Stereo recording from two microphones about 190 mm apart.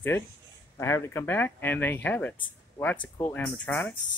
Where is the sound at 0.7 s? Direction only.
15° left (ahead or behind).